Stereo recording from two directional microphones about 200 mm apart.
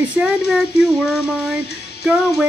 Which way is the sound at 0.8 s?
5° right (ahead or behind).